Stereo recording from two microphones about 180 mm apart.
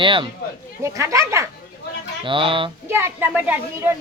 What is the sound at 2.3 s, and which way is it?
Speech, 30° right (ahead or behind).